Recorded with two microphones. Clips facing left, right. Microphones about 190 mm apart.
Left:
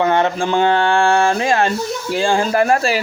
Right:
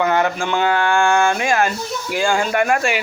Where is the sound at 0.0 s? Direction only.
25° left (ahead or behind).